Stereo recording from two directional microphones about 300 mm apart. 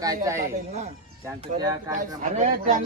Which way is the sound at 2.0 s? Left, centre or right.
Right.